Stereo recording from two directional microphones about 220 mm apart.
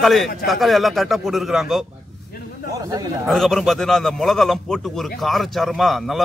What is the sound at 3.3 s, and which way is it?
A man's voice, centre (ahead or behind).